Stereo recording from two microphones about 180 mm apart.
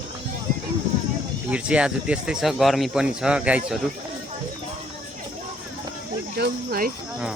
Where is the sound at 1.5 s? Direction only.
5° right (ahead or behind).